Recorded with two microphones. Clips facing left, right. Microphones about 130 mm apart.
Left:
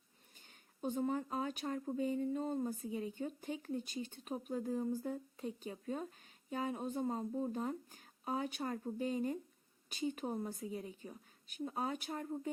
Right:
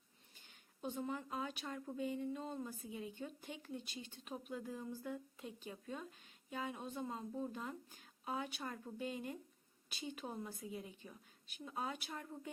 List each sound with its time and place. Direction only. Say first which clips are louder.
0.3 s speech: left 6 dB; 40° left (ahead or behind)